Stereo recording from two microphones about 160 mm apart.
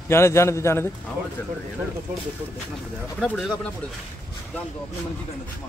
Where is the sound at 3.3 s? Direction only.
5° left (ahead or behind).